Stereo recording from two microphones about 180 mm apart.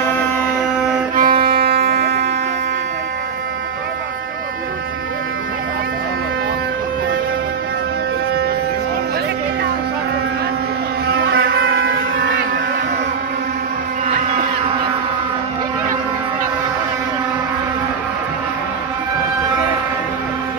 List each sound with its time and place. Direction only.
1.1 s violin: 55° right (ahead or behind)
1.9 s wind instrument: 60° right (ahead or behind)
11.1 s motorboat: 55° right (ahead or behind)